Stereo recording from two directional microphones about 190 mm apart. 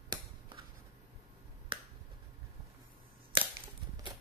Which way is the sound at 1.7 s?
25° right (ahead or behind).